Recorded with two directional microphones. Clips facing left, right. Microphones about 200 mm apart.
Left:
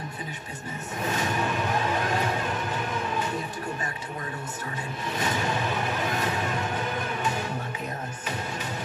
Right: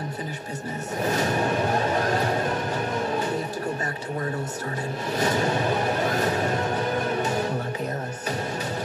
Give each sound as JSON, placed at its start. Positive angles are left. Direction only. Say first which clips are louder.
{"t": 1.0, "sound": "music", "louder": "right 4 dB", "side_deg": -40}
{"t": 5.1, "sound": "music", "louder": "right 5 dB", "side_deg": -40}